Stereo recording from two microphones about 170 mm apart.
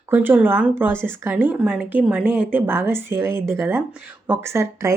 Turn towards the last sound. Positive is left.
turn(degrees=-15)  # may be behind; listen again after turning